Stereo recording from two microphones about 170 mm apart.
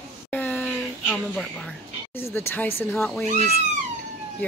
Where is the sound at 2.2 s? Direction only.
15° left (ahead or behind).